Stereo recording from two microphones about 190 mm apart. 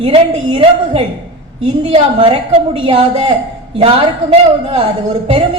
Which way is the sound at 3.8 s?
35° right (ahead or behind).